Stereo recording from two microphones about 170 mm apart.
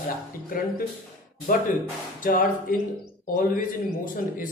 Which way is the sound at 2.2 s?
50° left (ahead or behind).